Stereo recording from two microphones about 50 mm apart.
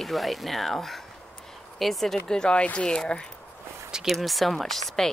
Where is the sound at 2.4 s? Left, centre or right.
Centre.